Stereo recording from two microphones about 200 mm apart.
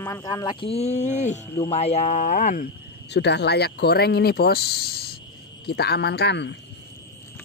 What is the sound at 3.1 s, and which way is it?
A man's voice, 60° left (ahead or behind).